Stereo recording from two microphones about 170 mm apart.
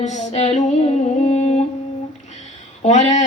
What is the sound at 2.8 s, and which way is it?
Speech, 45° left (ahead or behind).